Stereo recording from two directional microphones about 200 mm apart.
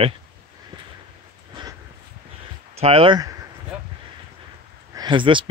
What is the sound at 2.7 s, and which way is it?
Speech, 30° right (ahead or behind).